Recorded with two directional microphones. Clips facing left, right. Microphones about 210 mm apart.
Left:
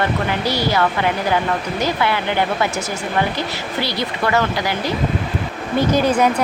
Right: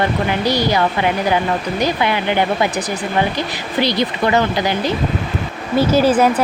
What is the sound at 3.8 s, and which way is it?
Speech, 20° right (ahead or behind).